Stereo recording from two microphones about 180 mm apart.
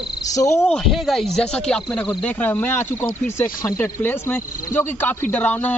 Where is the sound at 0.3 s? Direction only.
15° left (ahead or behind).